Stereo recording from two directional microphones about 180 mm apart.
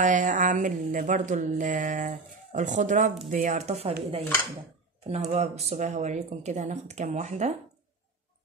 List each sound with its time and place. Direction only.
0.0 s music: 45° right (ahead or behind)
3.3 s speech: 45° right (ahead or behind)
5.0 s speech: 35° right (ahead or behind)